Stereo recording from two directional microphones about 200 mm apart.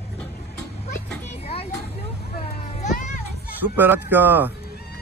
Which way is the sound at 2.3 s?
30° left (ahead or behind).